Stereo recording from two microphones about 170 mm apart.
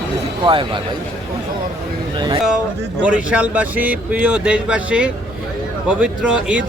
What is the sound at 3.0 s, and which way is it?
Speech, 10° right (ahead or behind).